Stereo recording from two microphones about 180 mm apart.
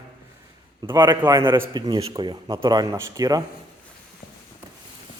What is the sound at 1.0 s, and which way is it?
Speech, 20° right (ahead or behind).